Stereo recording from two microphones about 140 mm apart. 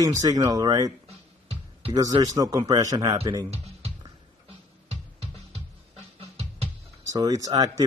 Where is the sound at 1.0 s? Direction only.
45° right (ahead or behind).